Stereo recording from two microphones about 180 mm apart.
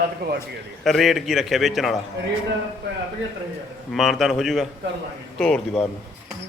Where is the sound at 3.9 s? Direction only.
Centre (ahead or behind).